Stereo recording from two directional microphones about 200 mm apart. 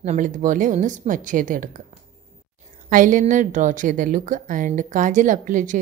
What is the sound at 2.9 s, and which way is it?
A woman's voice, 40° right (ahead or behind).